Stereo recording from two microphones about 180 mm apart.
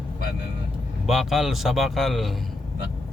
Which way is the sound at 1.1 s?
Centre (ahead or behind).